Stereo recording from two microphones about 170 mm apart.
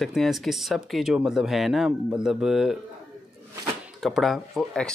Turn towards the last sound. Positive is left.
turn(degrees=5)  # may be behind; listen again after turning